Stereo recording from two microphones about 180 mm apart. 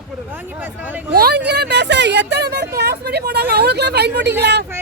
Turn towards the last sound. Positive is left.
turn(degrees=-70)  # may be behind; listen again after turning